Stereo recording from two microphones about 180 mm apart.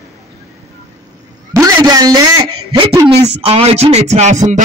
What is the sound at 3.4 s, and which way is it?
Music, 35° right (ahead or behind).